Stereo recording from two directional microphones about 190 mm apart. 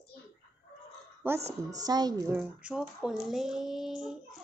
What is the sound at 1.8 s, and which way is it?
Speech, 20° right (ahead or behind).